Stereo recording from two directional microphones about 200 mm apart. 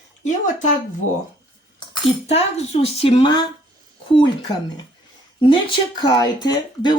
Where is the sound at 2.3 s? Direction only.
30° left (ahead or behind).